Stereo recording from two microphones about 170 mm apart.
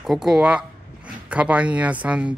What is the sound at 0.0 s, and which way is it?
Speech, 5° right (ahead or behind).